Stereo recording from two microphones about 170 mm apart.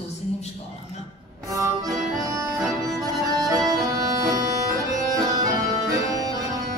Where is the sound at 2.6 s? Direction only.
Centre (ahead or behind).